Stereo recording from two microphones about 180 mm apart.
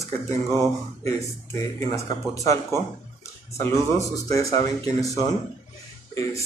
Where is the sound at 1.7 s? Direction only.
20° left (ahead or behind).